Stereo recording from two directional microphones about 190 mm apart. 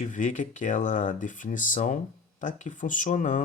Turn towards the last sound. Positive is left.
turn(degrees=40)  # may be behind; listen again after turning